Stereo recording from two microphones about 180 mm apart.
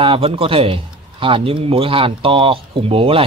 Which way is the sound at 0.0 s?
30° right (ahead or behind).